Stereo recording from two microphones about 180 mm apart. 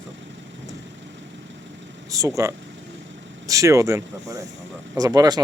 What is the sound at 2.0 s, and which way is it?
Speech, 20° right (ahead or behind).